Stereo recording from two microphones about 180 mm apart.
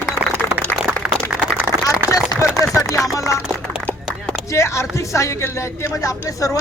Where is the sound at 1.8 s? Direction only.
20° left (ahead or behind).